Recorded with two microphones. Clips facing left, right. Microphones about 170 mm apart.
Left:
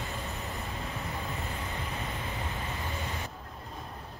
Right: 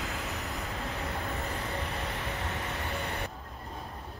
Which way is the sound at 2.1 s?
75° right (ahead or behind).